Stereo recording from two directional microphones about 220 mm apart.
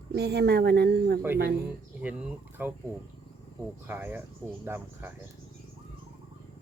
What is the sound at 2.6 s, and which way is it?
Speech, 10° right (ahead or behind).